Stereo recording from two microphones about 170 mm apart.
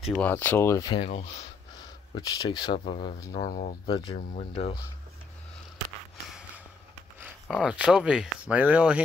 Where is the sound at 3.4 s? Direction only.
50° left (ahead or behind).